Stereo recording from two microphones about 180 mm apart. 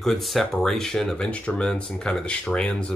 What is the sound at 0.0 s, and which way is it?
Speech, centre (ahead or behind).